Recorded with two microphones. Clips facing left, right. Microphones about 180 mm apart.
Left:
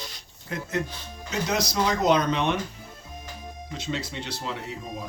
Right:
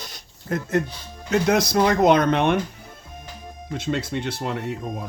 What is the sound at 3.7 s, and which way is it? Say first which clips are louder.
Speech: right 7 dB; 55° right (ahead or behind).